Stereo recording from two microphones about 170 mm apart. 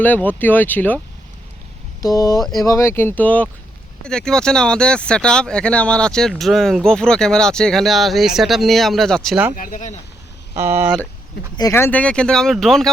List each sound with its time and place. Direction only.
0.0 s speech: 10° left (ahead or behind)
2.0 s speech: 20° left (ahead or behind); by 9.4 s 5° left (ahead or behind)
9.6 s speech: 50° left (ahead or behind)
10.5 s speech: 15° right (ahead or behind)
11.5 s speech: 20° left (ahead or behind); by 12.9 s centre (ahead or behind)